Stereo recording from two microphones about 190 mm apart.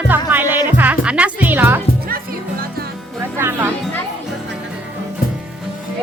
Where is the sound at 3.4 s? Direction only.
10° right (ahead or behind).